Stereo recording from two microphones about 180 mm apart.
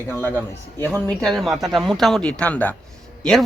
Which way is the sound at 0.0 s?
15° left (ahead or behind).